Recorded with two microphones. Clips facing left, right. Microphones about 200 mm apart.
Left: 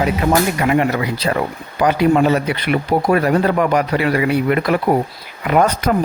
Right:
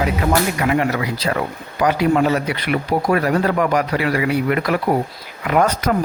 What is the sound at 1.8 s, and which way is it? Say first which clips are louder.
Speech: left 2 dB; 25° left (ahead or behind).